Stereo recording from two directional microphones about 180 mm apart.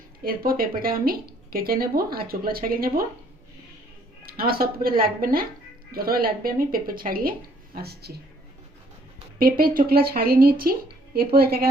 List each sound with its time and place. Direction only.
0.3 s speech: 55° right (ahead or behind)
4.3 s speech: 55° right (ahead or behind)
9.4 s speech: 55° right (ahead or behind)